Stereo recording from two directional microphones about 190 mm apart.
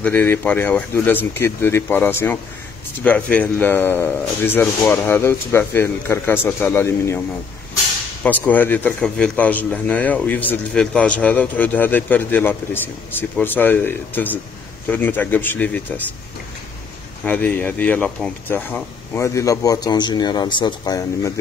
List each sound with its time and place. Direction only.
0.0 s a man's voice: 10° left (ahead or behind)
8.2 s a man's voice: 10° left (ahead or behind)
17.2 s a man's voice: 10° left (ahead or behind)